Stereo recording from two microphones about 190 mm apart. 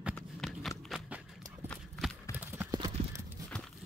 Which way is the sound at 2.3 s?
10° right (ahead or behind).